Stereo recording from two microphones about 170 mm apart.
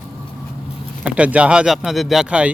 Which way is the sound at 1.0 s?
5° right (ahead or behind).